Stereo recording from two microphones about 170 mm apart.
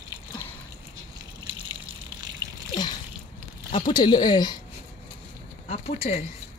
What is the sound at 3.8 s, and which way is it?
Speech, 25° left (ahead or behind).